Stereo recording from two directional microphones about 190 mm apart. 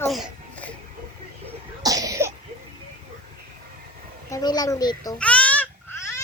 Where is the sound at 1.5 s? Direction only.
20° right (ahead or behind).